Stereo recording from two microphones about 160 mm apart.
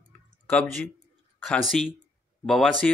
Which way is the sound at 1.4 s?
Centre (ahead or behind).